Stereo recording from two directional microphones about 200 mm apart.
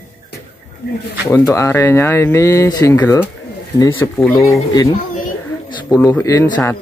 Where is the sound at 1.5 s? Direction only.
15° left (ahead or behind).